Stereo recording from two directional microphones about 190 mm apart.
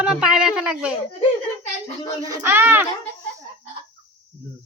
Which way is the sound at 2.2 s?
15° right (ahead or behind).